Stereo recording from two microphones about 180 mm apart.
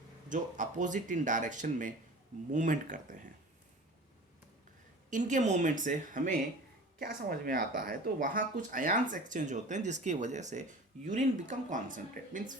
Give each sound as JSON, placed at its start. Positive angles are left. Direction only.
{"t": 0.3, "sound": "speech", "side_deg": -45}
{"t": 5.1, "sound": "speech", "side_deg": -45}